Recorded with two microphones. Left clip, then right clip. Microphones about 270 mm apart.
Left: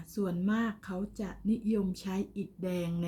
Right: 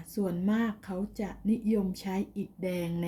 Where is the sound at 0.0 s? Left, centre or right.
Centre.